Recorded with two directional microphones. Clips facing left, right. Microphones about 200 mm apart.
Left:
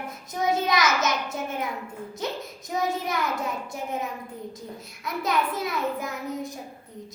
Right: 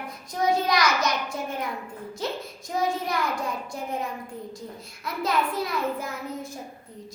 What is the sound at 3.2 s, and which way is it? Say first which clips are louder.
Speech: even; 20° left (ahead or behind).